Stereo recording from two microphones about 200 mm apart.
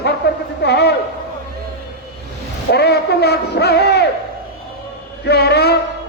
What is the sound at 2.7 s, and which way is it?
A woman's voice, 55° left (ahead or behind).